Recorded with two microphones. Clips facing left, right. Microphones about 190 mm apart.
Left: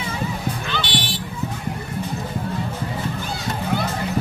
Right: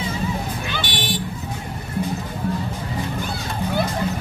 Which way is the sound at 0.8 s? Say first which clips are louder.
Left 1 dB; 50° right (ahead or behind).